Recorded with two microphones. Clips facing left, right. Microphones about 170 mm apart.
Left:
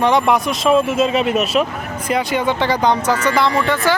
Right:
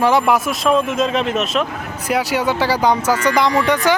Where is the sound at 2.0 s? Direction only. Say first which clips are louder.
Even; 5° right (ahead or behind).